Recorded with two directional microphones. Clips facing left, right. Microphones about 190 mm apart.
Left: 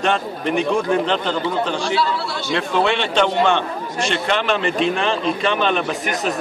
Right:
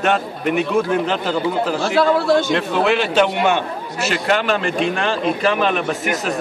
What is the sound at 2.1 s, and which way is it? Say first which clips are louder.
Speech: right 11 dB; 50° right (ahead or behind).